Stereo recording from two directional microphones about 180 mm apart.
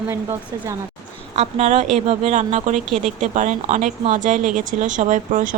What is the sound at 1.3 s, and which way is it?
A woman's voice, 35° right (ahead or behind).